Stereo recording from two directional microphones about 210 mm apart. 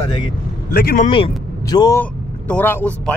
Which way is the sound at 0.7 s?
45° left (ahead or behind).